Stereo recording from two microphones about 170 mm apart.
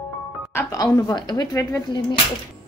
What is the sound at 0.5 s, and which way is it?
Speech, 20° left (ahead or behind).